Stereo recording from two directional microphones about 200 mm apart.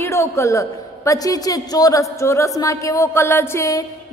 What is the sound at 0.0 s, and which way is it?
A woman's voice, 15° left (ahead or behind).